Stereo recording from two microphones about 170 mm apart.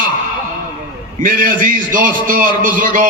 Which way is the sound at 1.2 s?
55° right (ahead or behind).